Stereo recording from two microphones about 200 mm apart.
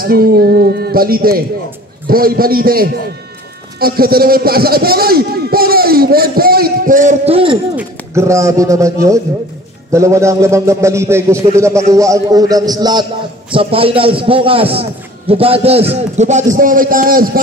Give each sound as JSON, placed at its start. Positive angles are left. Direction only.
{"t": 0.0, "sound": "a man's voice", "side_deg": -50}
{"t": 7.7, "sound": "a man's voice", "side_deg": -15}